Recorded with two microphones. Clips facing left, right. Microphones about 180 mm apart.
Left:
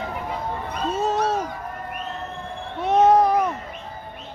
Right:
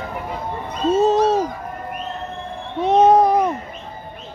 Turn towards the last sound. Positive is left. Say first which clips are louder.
# right 3 dB
turn(degrees=-20)  # may be behind; listen again after turning